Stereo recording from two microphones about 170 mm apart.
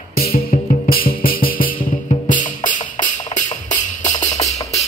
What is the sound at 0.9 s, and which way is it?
Music, 60° left (ahead or behind).